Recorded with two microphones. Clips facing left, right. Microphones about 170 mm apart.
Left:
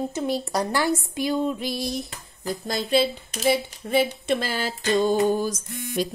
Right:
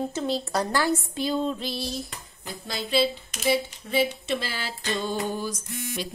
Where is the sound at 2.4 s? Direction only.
45° left (ahead or behind).